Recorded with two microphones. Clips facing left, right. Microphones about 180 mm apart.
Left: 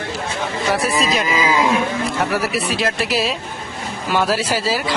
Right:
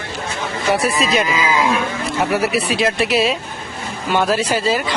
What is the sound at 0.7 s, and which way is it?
Speech, centre (ahead or behind).